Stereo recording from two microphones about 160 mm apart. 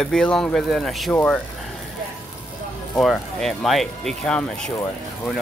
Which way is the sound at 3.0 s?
Centre (ahead or behind).